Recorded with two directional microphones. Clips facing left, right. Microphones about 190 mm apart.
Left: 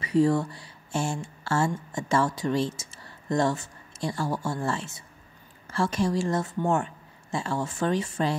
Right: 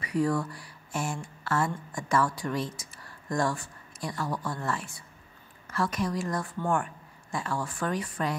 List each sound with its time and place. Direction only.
0.0 s a woman's voice: 25° left (ahead or behind)